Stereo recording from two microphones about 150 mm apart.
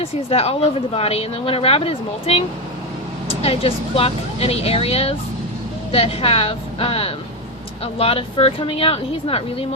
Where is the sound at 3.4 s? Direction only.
40° left (ahead or behind).